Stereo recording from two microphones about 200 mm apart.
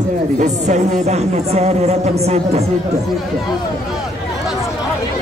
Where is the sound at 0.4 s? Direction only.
35° right (ahead or behind).